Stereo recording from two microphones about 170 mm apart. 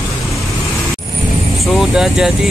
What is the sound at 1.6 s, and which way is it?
Speech, centre (ahead or behind).